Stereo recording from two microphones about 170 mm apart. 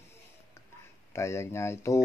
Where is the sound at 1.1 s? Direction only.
15° left (ahead or behind).